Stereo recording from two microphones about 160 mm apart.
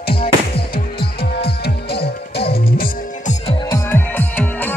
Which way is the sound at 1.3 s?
85° left.